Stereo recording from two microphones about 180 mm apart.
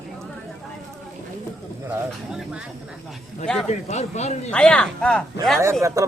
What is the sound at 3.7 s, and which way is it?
Speech, 40° left (ahead or behind).